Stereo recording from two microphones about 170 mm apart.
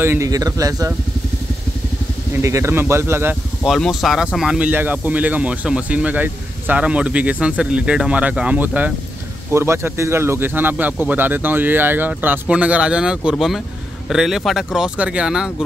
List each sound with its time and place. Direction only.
0.0 s speech: 15° right (ahead or behind)
2.4 s speech: 15° right (ahead or behind)
3.6 s speech: centre (ahead or behind)